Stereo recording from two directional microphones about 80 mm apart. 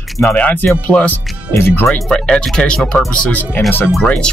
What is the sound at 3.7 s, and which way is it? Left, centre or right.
Speech, left.